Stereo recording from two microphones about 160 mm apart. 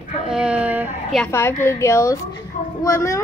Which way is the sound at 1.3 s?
15° left (ahead or behind).